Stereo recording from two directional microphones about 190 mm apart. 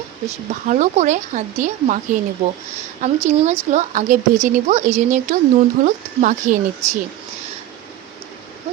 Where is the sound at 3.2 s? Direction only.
35° right (ahead or behind).